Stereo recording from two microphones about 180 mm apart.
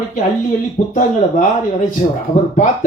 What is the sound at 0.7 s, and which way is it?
Speech, 40° left (ahead or behind).